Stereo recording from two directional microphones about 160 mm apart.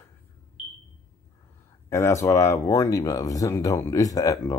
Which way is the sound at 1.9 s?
15° left (ahead or behind).